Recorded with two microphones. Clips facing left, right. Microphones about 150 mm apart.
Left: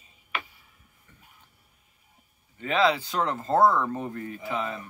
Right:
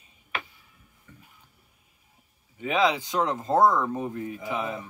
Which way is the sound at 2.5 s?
15° right (ahead or behind).